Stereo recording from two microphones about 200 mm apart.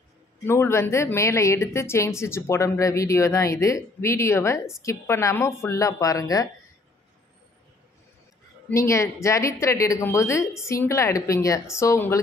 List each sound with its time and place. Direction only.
0.5 s a woman's voice: 10° left (ahead or behind)
8.6 s a woman's voice: 15° left (ahead or behind)